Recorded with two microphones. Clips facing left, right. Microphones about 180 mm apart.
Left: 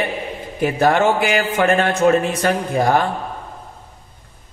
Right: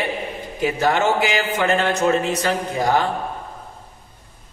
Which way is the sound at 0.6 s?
55° left (ahead or behind).